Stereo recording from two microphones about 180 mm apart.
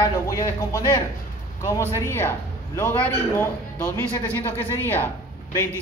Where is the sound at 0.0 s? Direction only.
15° left (ahead or behind).